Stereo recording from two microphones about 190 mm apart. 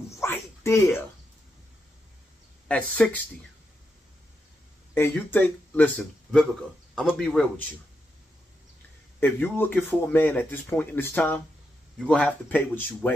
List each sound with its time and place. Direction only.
0.2 s a sound: 15° left (ahead or behind)
2.7 s a man's voice: 5° left (ahead or behind)
4.9 s a man's voice: 10° left (ahead or behind)
9.2 s speech: 10° left (ahead or behind)